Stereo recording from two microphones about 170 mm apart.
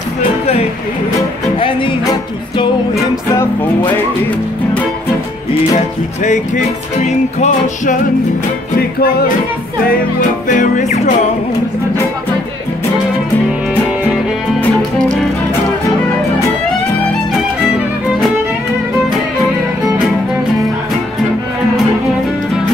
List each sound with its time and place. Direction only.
1.6 s music: 30° left (ahead or behind)
6.2 s music: 45° left (ahead or behind)
10.5 s music: 50° left (ahead or behind)
14.8 s music: 5° left (ahead or behind)